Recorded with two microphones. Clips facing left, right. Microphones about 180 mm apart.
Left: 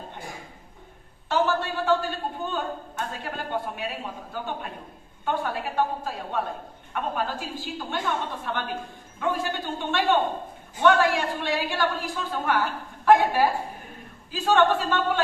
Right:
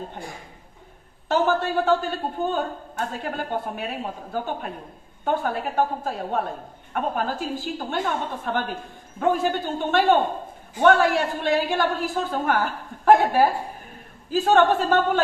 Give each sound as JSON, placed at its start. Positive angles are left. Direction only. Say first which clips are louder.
{"t": 1.3, "sound": "a woman's voice", "louder": "right 3 dB", "side_deg": -45}